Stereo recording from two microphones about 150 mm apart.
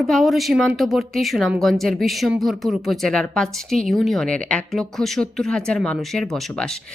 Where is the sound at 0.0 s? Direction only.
Centre (ahead or behind).